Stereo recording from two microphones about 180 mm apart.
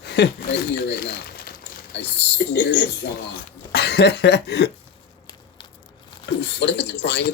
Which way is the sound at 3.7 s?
65° left (ahead or behind).